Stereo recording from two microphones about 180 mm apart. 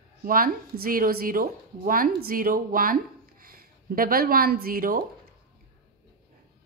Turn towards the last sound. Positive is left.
turn(degrees=-55)  # may be behind; listen again after turning